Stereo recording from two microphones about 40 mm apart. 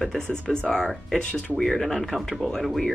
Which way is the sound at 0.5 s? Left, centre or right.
Centre.